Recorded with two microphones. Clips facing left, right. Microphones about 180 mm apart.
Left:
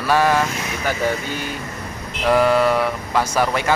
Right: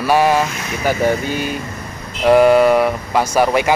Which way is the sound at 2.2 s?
15° right (ahead or behind).